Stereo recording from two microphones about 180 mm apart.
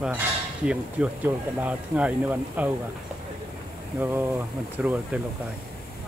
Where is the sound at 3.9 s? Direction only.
10° right (ahead or behind).